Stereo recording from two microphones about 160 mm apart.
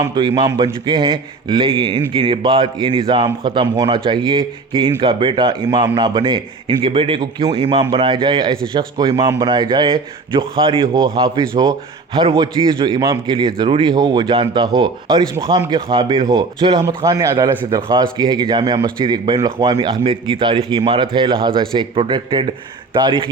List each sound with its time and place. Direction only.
0.0 s a man's voice: 30° right (ahead or behind)